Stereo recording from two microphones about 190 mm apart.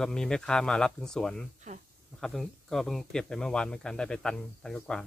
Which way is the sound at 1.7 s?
40° right (ahead or behind).